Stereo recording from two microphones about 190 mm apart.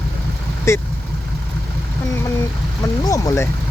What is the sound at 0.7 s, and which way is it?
Speech, 15° left (ahead or behind).